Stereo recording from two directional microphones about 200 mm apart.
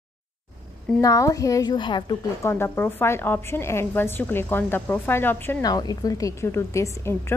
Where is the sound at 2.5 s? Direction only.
10° left (ahead or behind).